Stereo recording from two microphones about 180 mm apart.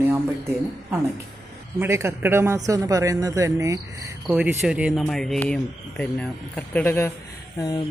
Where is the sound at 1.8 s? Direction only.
15° right (ahead or behind).